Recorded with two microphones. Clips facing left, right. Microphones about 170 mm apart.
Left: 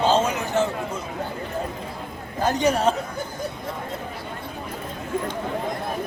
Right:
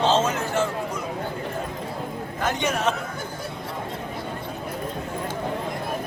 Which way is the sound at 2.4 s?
35° left (ahead or behind).